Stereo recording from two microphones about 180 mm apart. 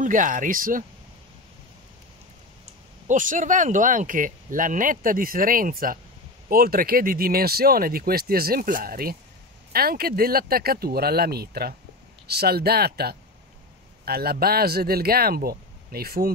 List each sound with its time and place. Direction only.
0.0 s speech: 45° right (ahead or behind)
3.1 s speech: 45° right (ahead or behind)